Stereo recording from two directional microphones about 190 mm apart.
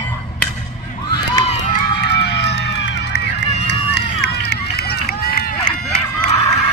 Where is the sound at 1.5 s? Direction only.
40° left (ahead or behind).